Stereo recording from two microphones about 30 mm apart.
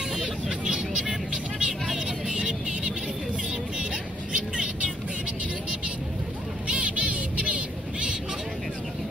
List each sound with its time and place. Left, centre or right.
0.2 s hubbub: right
2.0 s vehicle: right
6.7 s a sound: right
7.1 s vehicle: right